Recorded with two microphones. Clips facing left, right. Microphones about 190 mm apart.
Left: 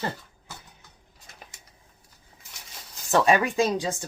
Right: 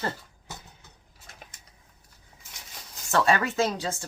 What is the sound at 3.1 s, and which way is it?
Speech, 15° left (ahead or behind).